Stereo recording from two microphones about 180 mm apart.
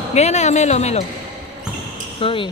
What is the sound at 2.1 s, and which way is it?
Speech, 30° left (ahead or behind).